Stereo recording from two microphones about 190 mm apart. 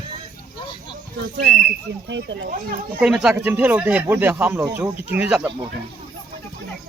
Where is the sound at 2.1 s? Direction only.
65° right (ahead or behind).